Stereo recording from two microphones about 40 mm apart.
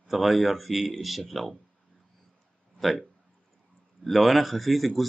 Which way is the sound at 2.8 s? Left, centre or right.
Centre.